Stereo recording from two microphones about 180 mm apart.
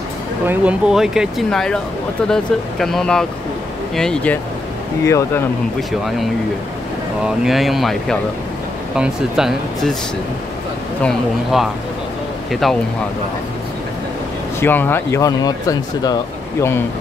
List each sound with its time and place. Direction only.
0.5 s speech: 5° right (ahead or behind)
5.0 s speech: 15° left (ahead or behind)
5.8 s speech: centre (ahead or behind)
7.2 s speech: centre (ahead or behind)
11.0 s speech: centre (ahead or behind)
14.6 s speech: 10° left (ahead or behind)